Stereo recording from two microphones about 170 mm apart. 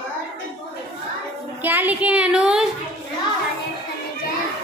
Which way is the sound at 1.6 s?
10° right (ahead or behind).